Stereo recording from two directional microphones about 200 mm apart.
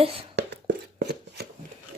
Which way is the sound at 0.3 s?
55° right (ahead or behind).